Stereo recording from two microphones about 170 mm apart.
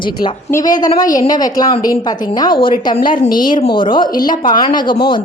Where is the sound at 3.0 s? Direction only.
55° left (ahead or behind).